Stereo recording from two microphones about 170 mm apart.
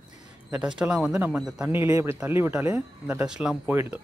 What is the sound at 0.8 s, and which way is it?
Speech, 5° right (ahead or behind).